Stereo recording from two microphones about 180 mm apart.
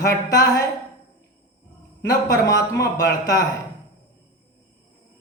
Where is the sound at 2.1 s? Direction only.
20° left (ahead or behind).